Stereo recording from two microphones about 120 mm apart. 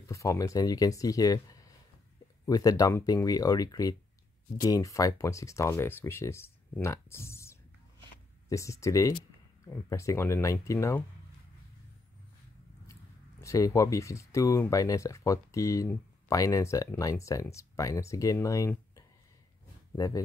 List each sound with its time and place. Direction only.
0.0 s speech: 25° left (ahead or behind)
13.4 s speech: 25° left (ahead or behind)